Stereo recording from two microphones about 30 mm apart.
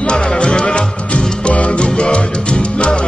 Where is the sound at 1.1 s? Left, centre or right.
Left.